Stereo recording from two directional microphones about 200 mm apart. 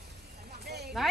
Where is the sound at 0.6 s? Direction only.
55° right (ahead or behind).